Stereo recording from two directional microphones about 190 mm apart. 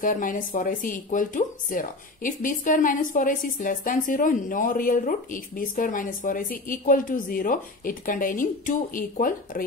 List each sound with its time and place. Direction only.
0.0 s speech: 45° left (ahead or behind)